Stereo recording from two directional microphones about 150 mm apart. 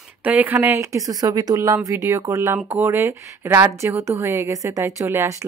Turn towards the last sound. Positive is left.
turn(degrees=-20)  # may be behind; listen again after turning